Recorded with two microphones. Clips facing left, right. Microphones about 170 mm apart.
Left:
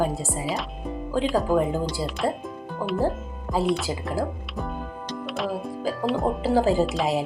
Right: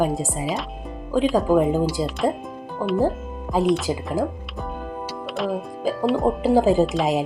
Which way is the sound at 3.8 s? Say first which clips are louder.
Right 4 dB; 15° right (ahead or behind).